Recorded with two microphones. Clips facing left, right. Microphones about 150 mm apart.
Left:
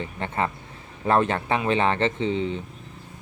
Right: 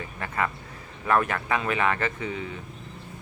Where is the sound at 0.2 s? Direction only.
30° left (ahead or behind).